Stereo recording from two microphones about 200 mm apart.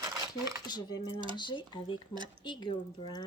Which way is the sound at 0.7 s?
20° left (ahead or behind).